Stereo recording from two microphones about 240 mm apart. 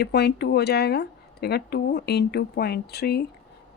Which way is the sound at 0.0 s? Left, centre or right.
Left.